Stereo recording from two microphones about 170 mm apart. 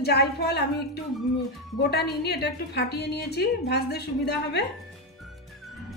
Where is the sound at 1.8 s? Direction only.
75° left (ahead or behind).